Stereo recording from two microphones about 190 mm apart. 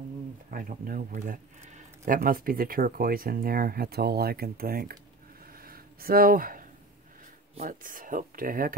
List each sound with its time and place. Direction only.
0.5 s speech: 45° right (ahead or behind)
5.6 s a sound: 50° right (ahead or behind)
7.6 s speech: 50° right (ahead or behind)